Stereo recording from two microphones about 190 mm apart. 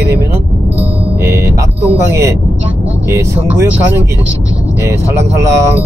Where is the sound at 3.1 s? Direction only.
15° right (ahead or behind).